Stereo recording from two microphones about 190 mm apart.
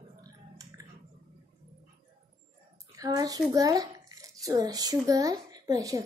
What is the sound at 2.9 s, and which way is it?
A child's voice, 20° right (ahead or behind).